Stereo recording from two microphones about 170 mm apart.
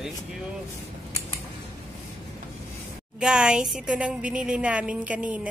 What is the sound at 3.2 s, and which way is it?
Speech, 5° right (ahead or behind).